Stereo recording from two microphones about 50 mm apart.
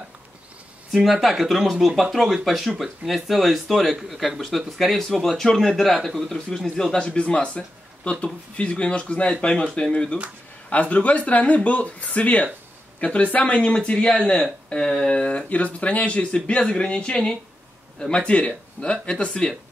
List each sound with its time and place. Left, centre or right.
0.9 s a man's voice: centre